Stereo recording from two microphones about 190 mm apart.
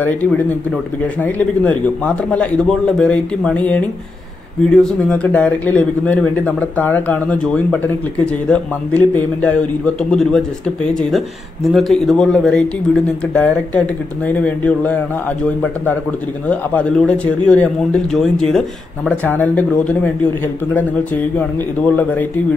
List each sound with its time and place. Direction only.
0.0 s speech: 10° left (ahead or behind)